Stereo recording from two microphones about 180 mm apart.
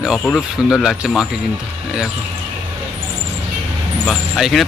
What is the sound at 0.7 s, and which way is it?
Speech, 5° right (ahead or behind).